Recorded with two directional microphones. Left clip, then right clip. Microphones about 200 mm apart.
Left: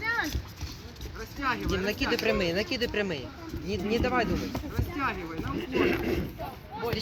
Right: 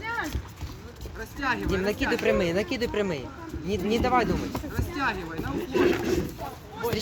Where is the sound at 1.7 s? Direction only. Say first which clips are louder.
Right 2 dB; 55° right (ahead or behind).